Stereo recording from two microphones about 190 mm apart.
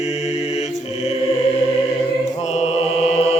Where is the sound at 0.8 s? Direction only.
35° left (ahead or behind).